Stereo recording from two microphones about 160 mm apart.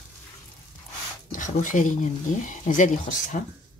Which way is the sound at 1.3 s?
55° left (ahead or behind).